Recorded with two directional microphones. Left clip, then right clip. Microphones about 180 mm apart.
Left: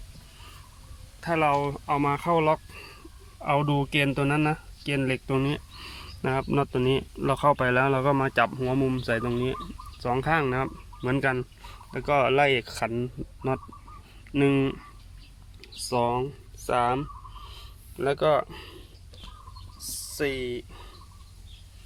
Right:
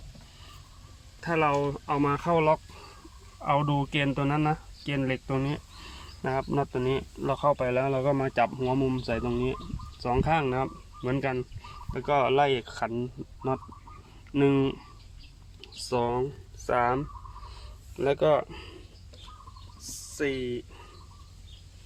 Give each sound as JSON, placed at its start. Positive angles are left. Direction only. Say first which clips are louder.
{"t": 1.2, "sound": "speech", "louder": "left 2 dB", "side_deg": -10}
{"t": 15.9, "sound": "speech", "louder": "left 2 dB", "side_deg": 5}
{"t": 20.1, "sound": "speech", "louder": "left 1 dB", "side_deg": 15}